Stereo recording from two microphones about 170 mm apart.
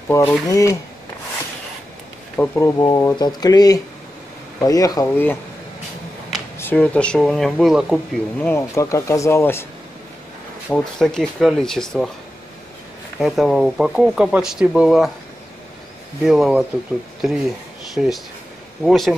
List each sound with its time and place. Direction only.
0.1 s speech: 15° left (ahead or behind)
2.3 s speech: 10° left (ahead or behind)
2.8 s speech: 20° left (ahead or behind)
6.6 s speech: 10° left (ahead or behind)
8.4 s speech: 15° left (ahead or behind)
10.7 s speech: 5° left (ahead or behind)
13.2 s speech: centre (ahead or behind)
16.3 s speech: 5° right (ahead or behind)